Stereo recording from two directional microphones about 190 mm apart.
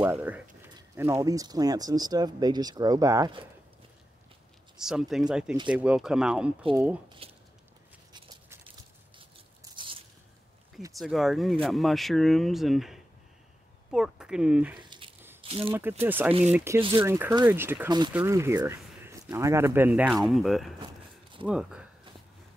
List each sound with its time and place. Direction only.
0.0 s speech: 10° right (ahead or behind)
4.7 s speech: 5° right (ahead or behind)
7.2 s a sound: 30° right (ahead or behind)
8.1 s biting: 20° right (ahead or behind)
9.8 s biting: 25° right (ahead or behind)
11.0 s speech: centre (ahead or behind)
14.8 s squish: 25° right (ahead or behind)
15.4 s a sound: 30° right (ahead or behind)
15.7 s speech: 10° right (ahead or behind)
20.8 s a sound: 25° right (ahead or behind)
21.5 s speech: 5° right (ahead or behind)